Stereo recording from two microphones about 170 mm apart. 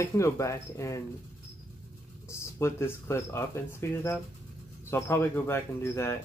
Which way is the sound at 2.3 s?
15° left (ahead or behind).